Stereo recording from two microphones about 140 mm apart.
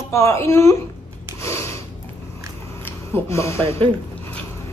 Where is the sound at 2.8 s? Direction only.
20° left (ahead or behind).